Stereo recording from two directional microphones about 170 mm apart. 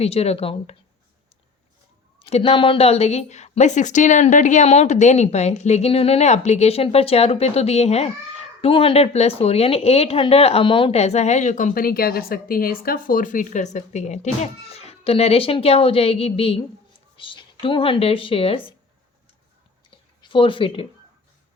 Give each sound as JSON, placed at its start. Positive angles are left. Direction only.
{"t": 0.0, "sound": "speech", "side_deg": 35}
{"t": 2.1, "sound": "speech", "side_deg": 35}
{"t": 20.2, "sound": "speech", "side_deg": 30}